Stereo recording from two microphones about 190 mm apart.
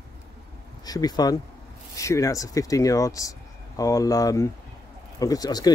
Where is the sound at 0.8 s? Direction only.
20° left (ahead or behind).